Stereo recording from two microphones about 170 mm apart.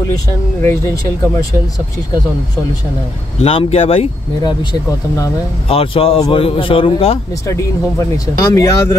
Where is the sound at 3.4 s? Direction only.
35° left (ahead or behind).